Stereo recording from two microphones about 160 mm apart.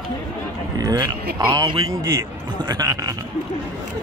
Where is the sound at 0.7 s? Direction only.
25° right (ahead or behind).